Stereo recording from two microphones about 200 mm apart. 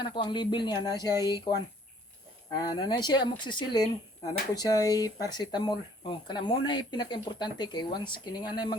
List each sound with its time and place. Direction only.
0.0 s speech: 25° left (ahead or behind)